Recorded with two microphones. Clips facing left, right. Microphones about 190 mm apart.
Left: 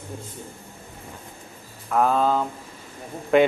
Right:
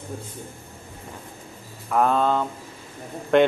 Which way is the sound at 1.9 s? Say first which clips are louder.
Even; centre (ahead or behind).